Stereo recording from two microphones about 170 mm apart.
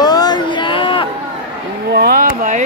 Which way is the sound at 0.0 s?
25° left (ahead or behind).